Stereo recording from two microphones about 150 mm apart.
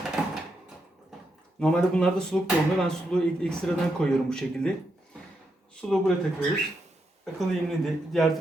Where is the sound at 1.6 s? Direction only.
5° left (ahead or behind).